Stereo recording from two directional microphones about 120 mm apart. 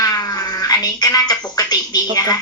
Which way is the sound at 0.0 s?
35° left (ahead or behind).